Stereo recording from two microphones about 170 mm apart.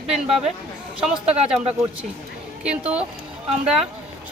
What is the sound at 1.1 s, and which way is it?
Speech, 35° right (ahead or behind).